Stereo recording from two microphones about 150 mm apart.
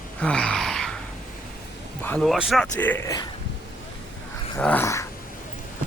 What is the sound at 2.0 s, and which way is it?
Speech, centre (ahead or behind).